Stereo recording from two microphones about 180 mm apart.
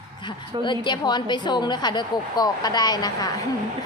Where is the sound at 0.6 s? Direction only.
25° left (ahead or behind).